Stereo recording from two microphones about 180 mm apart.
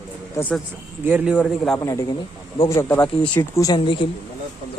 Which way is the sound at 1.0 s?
5° right (ahead or behind).